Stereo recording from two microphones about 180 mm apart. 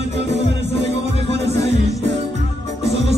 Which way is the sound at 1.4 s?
70° right (ahead or behind).